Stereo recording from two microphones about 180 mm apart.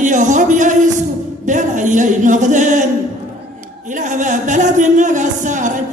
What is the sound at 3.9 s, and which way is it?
Speech, 45° right (ahead or behind).